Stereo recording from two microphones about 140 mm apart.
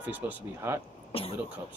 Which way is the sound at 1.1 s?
45° left (ahead or behind).